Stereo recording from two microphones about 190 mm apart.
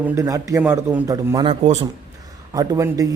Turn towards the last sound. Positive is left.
turn(degrees=-15)  # may be behind; listen again after turning